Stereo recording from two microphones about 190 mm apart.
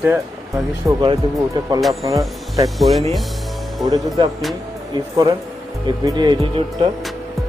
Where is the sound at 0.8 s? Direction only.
25° right (ahead or behind).